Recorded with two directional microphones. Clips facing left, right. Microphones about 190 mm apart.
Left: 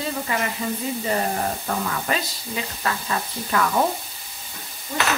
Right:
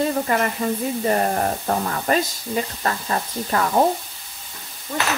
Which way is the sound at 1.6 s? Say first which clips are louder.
Right 4 dB; 40° right (ahead or behind).